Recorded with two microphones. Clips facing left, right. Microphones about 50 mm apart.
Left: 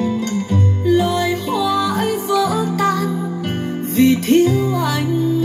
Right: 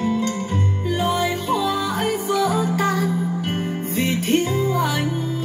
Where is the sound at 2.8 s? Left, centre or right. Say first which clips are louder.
Left 3 dB; centre.